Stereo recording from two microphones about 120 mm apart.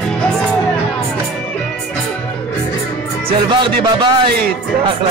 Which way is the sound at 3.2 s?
40° right (ahead or behind).